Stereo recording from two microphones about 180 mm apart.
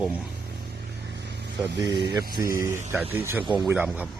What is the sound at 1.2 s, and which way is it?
Vehicle, 70° right (ahead or behind).